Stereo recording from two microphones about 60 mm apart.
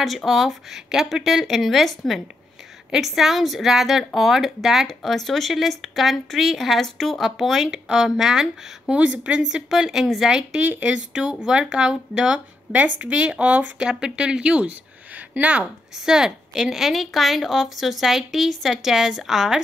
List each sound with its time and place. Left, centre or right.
0.0 s speech: centre
8.9 s speech: centre
10.6 s speech: right
12.7 s speech: right
13.7 s speech: centre
15.6 s speech: centre